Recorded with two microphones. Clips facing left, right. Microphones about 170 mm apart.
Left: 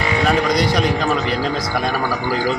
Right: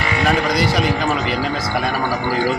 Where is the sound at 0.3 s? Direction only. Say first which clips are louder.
Even; centre (ahead or behind).